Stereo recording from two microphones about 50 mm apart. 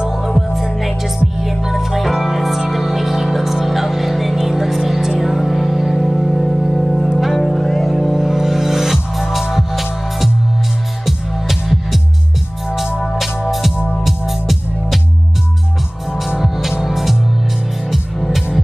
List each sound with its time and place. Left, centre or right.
0.4 s music: centre
7.3 s music: centre
13.0 s music: centre
16.3 s music: centre